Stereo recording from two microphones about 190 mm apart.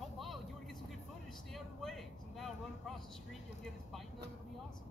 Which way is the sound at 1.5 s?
Centre (ahead or behind).